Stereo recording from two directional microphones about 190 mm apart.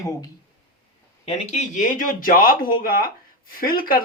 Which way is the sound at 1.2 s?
40° left (ahead or behind).